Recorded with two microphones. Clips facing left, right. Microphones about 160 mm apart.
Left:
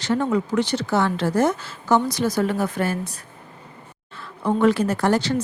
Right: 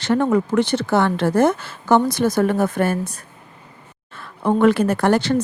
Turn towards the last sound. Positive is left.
turn(degrees=-55)  # may be behind; listen again after turning